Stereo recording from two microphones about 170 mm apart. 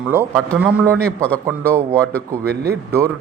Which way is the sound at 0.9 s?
5° left (ahead or behind).